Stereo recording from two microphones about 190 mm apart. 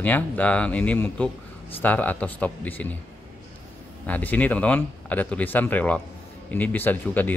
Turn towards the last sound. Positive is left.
turn(degrees=10)  # may be behind; listen again after turning